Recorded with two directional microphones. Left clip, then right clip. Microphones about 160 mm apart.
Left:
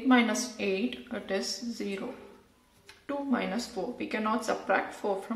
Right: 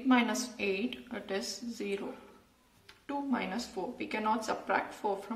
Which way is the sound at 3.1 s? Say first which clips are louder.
Left 3 dB; 20° left (ahead or behind).